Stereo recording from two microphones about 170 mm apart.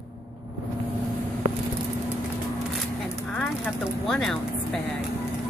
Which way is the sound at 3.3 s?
10° left (ahead or behind).